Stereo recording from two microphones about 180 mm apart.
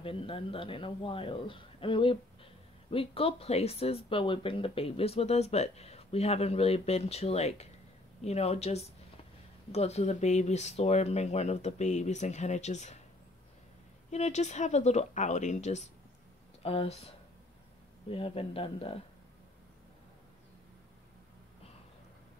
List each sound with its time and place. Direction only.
0.0 s speech: 30° left (ahead or behind)
14.1 s speech: 40° left (ahead or behind)
18.1 s speech: 30° left (ahead or behind)